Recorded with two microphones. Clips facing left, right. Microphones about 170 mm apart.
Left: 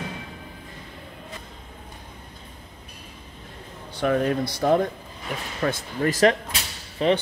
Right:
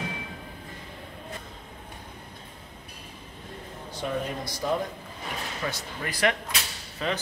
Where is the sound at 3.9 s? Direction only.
70° left (ahead or behind).